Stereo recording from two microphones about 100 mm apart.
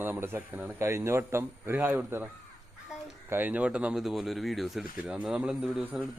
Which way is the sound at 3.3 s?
20° right (ahead or behind).